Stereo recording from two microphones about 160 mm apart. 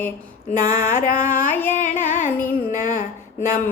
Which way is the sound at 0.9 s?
55° left (ahead or behind).